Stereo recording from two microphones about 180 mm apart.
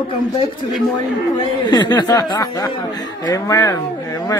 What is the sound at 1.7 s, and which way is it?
Speech, 20° left (ahead or behind).